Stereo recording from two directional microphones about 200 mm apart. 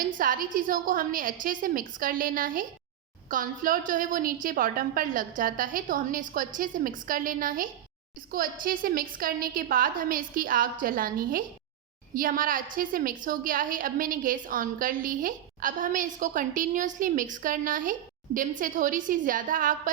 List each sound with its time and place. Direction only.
0.0 s a woman's voice: 45° right (ahead or behind)